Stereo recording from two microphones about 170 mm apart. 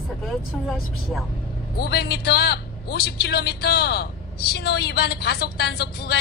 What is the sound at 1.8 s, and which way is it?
A woman's voice, 70° left (ahead or behind).